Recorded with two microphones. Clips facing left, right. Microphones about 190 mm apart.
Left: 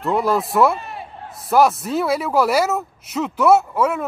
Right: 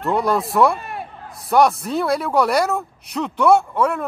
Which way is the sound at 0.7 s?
55° right (ahead or behind).